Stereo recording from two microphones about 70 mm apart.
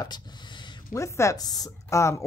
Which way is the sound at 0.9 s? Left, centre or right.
Left.